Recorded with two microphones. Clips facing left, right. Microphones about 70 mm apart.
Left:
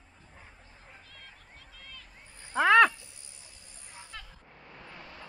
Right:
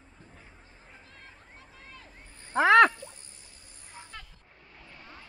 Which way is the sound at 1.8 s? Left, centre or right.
Right.